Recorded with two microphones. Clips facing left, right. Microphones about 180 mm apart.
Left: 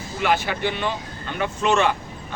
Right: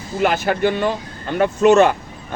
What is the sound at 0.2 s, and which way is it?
Speech, 45° right (ahead or behind).